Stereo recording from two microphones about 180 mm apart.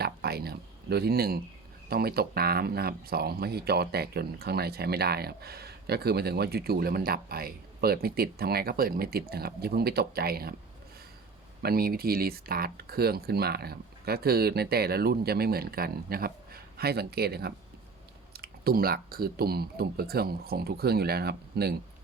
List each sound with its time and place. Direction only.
0.0 s speech: 60° right (ahead or behind)
11.6 s speech: 55° right (ahead or behind)